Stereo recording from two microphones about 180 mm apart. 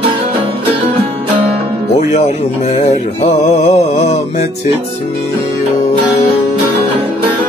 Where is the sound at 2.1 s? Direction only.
40° left (ahead or behind).